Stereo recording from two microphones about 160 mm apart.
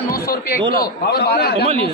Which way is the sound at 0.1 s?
70° left (ahead or behind).